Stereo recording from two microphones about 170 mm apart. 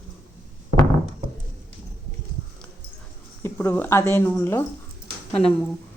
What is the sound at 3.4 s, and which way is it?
Speech, 15° left (ahead or behind).